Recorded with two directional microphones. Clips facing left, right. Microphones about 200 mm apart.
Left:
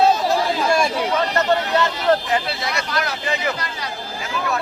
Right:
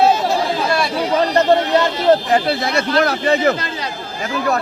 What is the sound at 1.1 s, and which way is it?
Speech, 35° right (ahead or behind).